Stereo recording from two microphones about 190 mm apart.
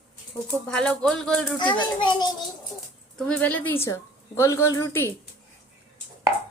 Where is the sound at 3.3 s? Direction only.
10° left (ahead or behind).